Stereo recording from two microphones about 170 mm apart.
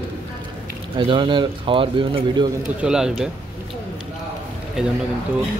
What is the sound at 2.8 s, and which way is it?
Speech, 5° right (ahead or behind).